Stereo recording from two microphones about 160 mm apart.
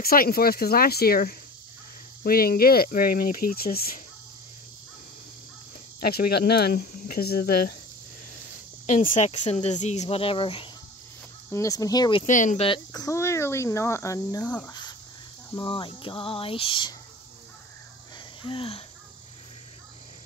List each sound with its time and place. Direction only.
0.0 s speech: 70° left (ahead or behind)
5.9 s speech: 75° left (ahead or behind)
8.8 s speech: 55° left (ahead or behind); by 10.7 s 35° left (ahead or behind)
11.5 s speech: 20° left (ahead or behind)
12.3 s speech: 55° left (ahead or behind)
12.5 s speech: 30° left (ahead or behind)
14.7 s a sound: 25° left (ahead or behind)
18.4 s a sound: 35° left (ahead or behind)